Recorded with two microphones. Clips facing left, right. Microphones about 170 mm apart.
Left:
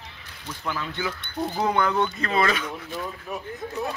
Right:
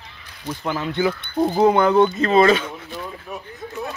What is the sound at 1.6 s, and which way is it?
Speech, 25° right (ahead or behind).